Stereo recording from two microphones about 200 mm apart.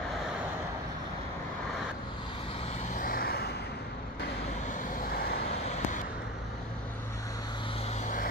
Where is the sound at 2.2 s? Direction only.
25° left (ahead or behind); by 4.3 s 55° left (ahead or behind).